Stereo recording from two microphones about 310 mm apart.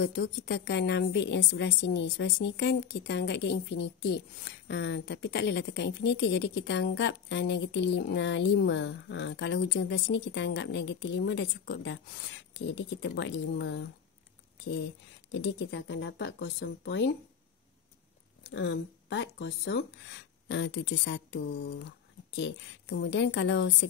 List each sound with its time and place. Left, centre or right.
0.0 s a woman's voice: left
15.3 s a woman's voice: left
18.5 s a woman's voice: left